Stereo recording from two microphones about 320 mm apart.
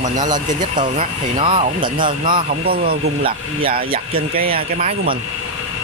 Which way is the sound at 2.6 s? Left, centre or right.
Right.